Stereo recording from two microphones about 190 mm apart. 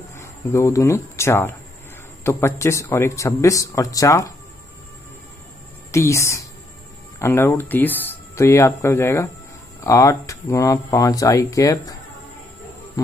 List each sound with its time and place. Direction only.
0.2 s speech: 15° left (ahead or behind)
5.9 s a woman's voice: 15° left (ahead or behind)
13.0 s insect: 20° left (ahead or behind)